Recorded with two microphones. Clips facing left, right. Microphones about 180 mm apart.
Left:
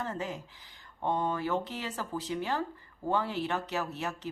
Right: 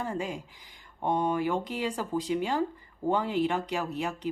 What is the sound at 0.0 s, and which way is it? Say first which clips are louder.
Speech: right 3 dB; 10° right (ahead or behind).